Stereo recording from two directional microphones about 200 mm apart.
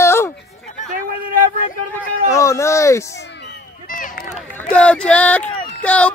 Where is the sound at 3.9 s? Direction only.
40° left (ahead or behind).